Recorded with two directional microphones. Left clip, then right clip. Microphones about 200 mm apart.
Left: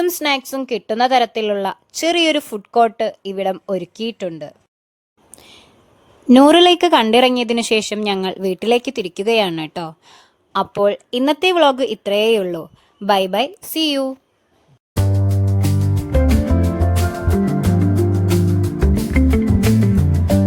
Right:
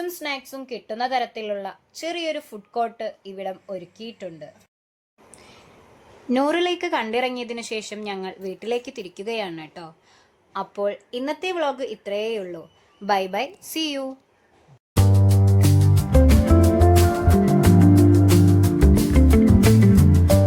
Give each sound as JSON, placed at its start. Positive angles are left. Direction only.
{"t": 0.0, "sound": "a woman's voice", "side_deg": 50}
{"t": 6.2, "sound": "a woman's voice", "side_deg": 40}
{"t": 13.1, "sound": "a woman's voice", "side_deg": 35}
{"t": 14.9, "sound": "music", "side_deg": 0}
{"t": 18.3, "sound": "music", "side_deg": 0}